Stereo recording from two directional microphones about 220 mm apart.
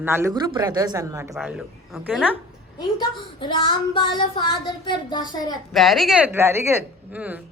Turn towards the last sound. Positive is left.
turn(degrees=-5)  # may be behind; listen again after turning